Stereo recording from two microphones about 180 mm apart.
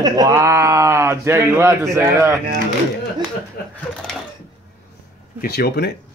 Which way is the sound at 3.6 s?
60° left (ahead or behind).